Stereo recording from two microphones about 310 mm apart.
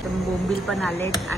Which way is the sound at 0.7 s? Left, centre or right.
Centre.